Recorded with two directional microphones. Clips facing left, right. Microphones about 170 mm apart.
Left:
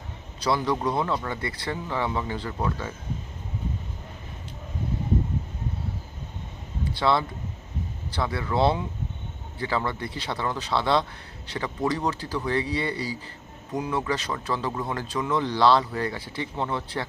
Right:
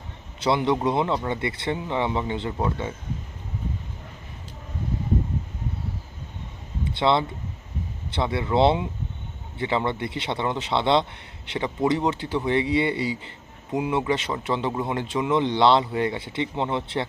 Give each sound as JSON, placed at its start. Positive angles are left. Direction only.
{"t": 0.3, "sound": "speech", "side_deg": -25}
{"t": 6.8, "sound": "a sound", "side_deg": -20}
{"t": 8.1, "sound": "speech", "side_deg": -25}